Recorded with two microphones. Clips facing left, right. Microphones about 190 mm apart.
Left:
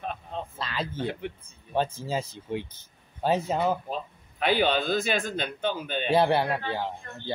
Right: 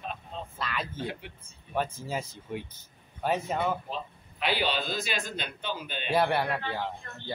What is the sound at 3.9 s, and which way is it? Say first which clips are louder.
A man's voice: left 3 dB; 50° left (ahead or behind).